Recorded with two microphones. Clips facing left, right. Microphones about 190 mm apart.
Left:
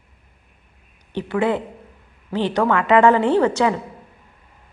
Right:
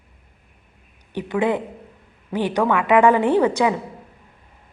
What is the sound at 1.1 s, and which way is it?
A woman's voice, 15° right (ahead or behind).